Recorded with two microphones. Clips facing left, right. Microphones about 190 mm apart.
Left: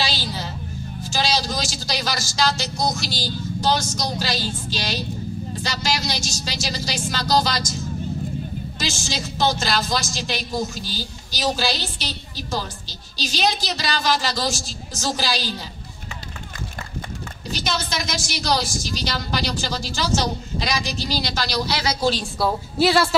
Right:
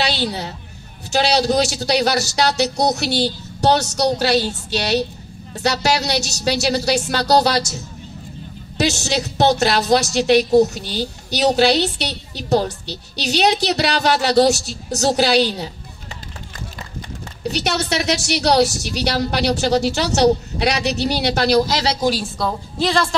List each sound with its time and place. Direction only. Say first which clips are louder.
0.0 s a sound: right 5 dB; 65° right (ahead or behind)
1.1 s a woman's voice: right 8 dB; 65° right (ahead or behind)
17.4 s a woman's voice: right 6 dB; 65° right (ahead or behind); by 21.8 s 50° right (ahead or behind)
22.4 s a woman's voice: left 6 dB; 5° left (ahead or behind)